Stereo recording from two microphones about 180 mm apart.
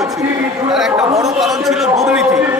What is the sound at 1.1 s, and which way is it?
Speech, 20° right (ahead or behind).